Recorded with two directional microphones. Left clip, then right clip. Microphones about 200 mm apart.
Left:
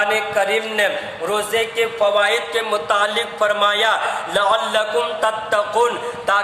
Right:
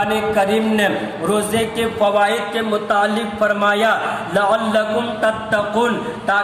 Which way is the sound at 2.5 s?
45° left (ahead or behind).